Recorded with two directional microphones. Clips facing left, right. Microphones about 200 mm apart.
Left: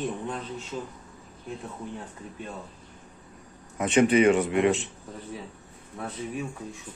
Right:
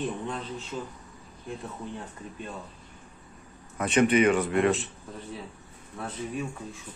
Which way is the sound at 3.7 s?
25° left (ahead or behind).